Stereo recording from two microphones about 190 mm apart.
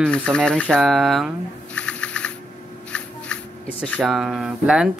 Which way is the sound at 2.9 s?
5° left (ahead or behind).